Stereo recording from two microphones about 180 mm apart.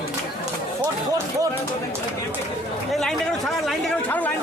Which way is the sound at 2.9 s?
Centre (ahead or behind).